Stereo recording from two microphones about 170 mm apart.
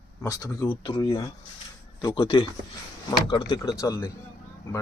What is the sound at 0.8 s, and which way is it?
Speech, 30° left (ahead or behind).